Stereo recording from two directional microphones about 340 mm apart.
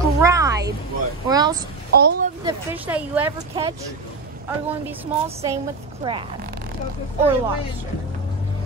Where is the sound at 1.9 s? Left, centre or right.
Right.